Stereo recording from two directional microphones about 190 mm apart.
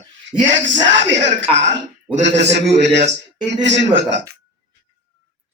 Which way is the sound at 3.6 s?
70° right (ahead or behind).